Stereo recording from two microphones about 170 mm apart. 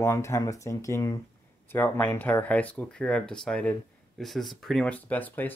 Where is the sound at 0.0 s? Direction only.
15° left (ahead or behind).